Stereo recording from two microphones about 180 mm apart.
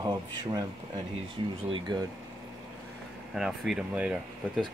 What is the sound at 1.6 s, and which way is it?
Speech, 30° right (ahead or behind).